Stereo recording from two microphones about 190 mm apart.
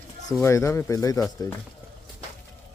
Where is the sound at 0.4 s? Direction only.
15° left (ahead or behind).